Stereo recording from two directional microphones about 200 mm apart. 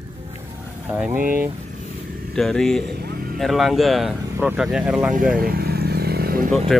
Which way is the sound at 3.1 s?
50° right (ahead or behind).